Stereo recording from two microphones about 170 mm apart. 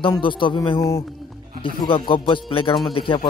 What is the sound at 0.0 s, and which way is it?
A man's voice, 30° left (ahead or behind).